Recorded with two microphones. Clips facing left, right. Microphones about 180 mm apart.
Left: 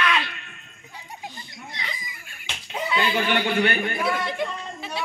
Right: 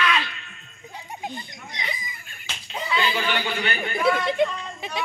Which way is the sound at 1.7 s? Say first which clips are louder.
Right 3 dB; 20° right (ahead or behind).